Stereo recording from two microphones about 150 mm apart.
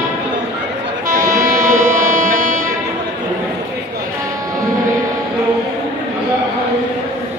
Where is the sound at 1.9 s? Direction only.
60° right (ahead or behind).